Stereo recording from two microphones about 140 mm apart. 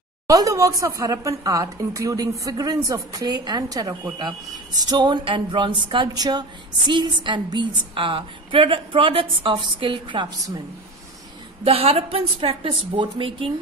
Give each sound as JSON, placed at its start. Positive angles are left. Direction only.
{"t": 0.3, "sound": "a woman's voice", "side_deg": -25}
{"t": 11.6, "sound": "a woman's voice", "side_deg": -45}